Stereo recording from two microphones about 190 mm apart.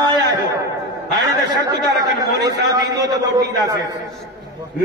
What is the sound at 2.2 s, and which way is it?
A man's voice, 20° right (ahead or behind).